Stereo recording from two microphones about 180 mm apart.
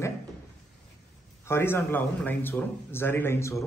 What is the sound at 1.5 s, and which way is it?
A man's voice, 15° left (ahead or behind).